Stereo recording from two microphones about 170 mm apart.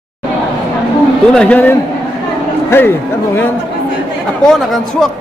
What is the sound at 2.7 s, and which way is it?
Speech, 15° left (ahead or behind).